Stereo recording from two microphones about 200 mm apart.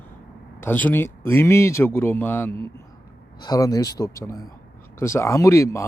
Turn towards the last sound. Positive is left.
turn(degrees=15)  # may be behind; listen again after turning